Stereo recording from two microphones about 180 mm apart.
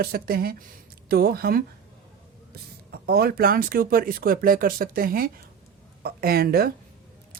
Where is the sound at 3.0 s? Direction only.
60° right (ahead or behind).